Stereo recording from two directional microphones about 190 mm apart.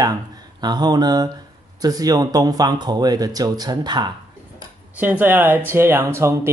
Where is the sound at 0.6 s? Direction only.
20° right (ahead or behind).